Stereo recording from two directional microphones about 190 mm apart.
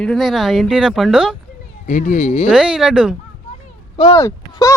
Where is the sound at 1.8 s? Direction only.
40° left (ahead or behind).